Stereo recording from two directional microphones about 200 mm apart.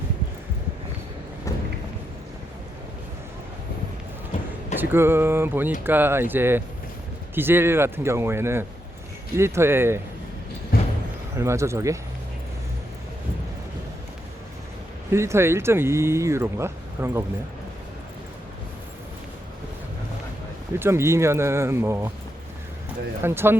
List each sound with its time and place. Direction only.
1.5 s a sound: 15° left (ahead or behind)
4.8 s speech: 10° right (ahead or behind)
10.7 s a sound: 50° left (ahead or behind)
11.3 s speech: 15° right (ahead or behind)
15.1 s speech: 15° right (ahead or behind)
20.7 s speech: 10° right (ahead or behind)
23.2 s speech: 10° right (ahead or behind)